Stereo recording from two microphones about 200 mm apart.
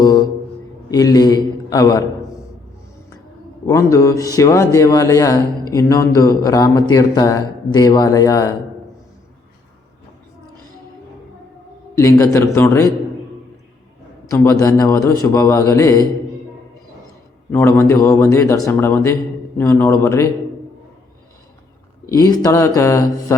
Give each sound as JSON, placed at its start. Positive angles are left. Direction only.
{"t": 0.0, "sound": "a sound", "side_deg": 20}
{"t": 0.9, "sound": "a man's voice", "side_deg": 20}
{"t": 3.7, "sound": "speech", "side_deg": 15}
{"t": 11.9, "sound": "speech", "side_deg": 15}
{"t": 14.3, "sound": "a man's voice", "side_deg": 15}
{"t": 17.5, "sound": "speech", "side_deg": 10}
{"t": 22.1, "sound": "speech", "side_deg": 20}